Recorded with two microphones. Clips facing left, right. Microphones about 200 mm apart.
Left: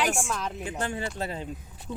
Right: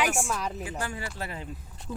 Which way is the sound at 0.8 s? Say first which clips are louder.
Left 7 dB; 25° left (ahead or behind).